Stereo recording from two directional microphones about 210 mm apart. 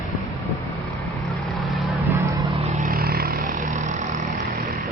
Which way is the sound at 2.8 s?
45° right (ahead or behind).